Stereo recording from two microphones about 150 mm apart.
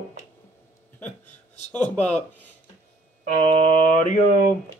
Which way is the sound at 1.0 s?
10° left (ahead or behind).